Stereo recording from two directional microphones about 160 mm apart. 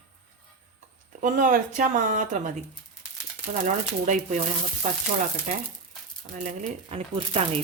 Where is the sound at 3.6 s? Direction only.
50° right (ahead or behind).